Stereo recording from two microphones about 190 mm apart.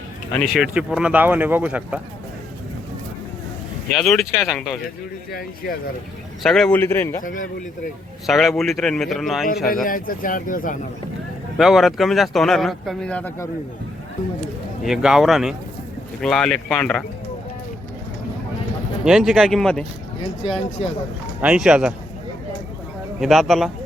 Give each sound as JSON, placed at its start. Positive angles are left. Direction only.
{"t": 0.3, "sound": "speech", "side_deg": 0}
{"t": 3.9, "sound": "speech", "side_deg": 0}
{"t": 6.4, "sound": "a man's voice", "side_deg": 5}
{"t": 7.2, "sound": "speech", "side_deg": 45}
{"t": 8.3, "sound": "speech", "side_deg": 0}
{"t": 9.8, "sound": "speech", "side_deg": 45}
{"t": 11.5, "sound": "speech", "side_deg": 0}
{"t": 14.4, "sound": "speech", "side_deg": 0}
{"t": 19.0, "sound": "speech", "side_deg": 0}
{"t": 20.8, "sound": "speech", "side_deg": 35}
{"t": 21.4, "sound": "speech", "side_deg": -5}
{"t": 23.2, "sound": "speech", "side_deg": 0}